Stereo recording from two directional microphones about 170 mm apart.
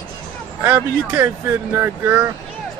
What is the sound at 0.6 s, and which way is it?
Speech, 15° right (ahead or behind).